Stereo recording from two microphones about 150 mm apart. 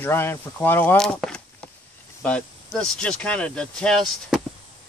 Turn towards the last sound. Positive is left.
turn(degrees=0)  # may be behind; listen again after turning